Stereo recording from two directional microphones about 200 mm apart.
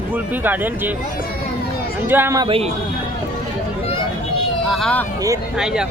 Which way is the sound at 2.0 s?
10° right (ahead or behind).